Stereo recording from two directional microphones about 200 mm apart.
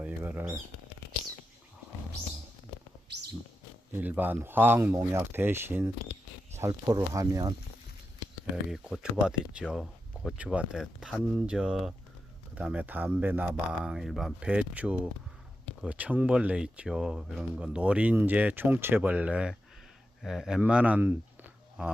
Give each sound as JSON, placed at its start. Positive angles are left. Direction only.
{"t": 0.0, "sound": "a sound", "side_deg": -10}
{"t": 4.0, "sound": "speech", "side_deg": -10}
{"t": 8.7, "sound": "speech", "side_deg": -5}